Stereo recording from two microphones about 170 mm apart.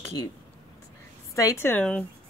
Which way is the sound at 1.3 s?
20° left (ahead or behind).